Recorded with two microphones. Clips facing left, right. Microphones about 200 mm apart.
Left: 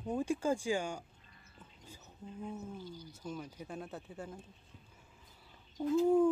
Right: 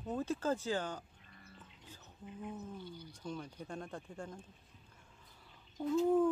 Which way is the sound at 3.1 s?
5° left (ahead or behind).